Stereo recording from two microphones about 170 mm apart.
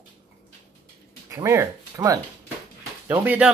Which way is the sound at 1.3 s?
15° right (ahead or behind).